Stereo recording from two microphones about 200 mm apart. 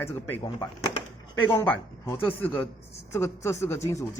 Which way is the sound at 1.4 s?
10° left (ahead or behind).